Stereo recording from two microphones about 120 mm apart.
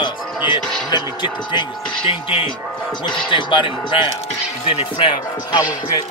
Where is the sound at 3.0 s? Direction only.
45° left (ahead or behind).